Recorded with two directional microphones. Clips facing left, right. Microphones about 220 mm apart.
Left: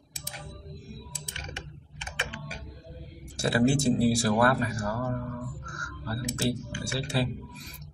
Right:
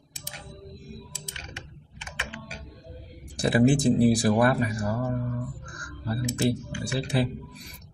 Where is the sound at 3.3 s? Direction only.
20° right (ahead or behind).